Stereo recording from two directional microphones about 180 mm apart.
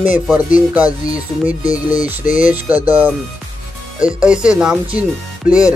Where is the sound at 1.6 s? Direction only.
50° left (ahead or behind).